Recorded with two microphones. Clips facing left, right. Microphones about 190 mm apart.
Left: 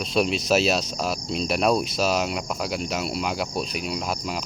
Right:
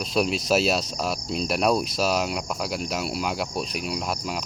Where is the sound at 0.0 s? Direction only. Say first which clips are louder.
Left 1 dB; centre (ahead or behind).